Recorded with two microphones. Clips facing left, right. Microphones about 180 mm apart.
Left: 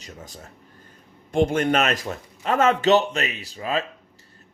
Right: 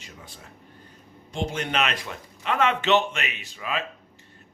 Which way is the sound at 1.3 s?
55° left (ahead or behind).